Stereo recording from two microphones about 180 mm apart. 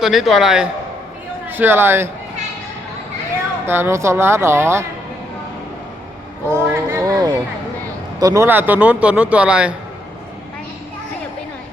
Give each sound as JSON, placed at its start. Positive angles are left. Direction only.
{"t": 0.0, "sound": "a man's voice", "side_deg": 0}
{"t": 3.7, "sound": "a man's voice", "side_deg": -15}
{"t": 6.5, "sound": "a sound", "side_deg": -15}
{"t": 8.2, "sound": "a man's voice", "side_deg": -15}